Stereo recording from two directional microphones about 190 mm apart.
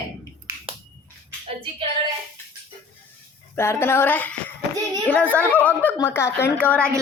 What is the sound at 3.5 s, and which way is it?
Speech, 15° left (ahead or behind).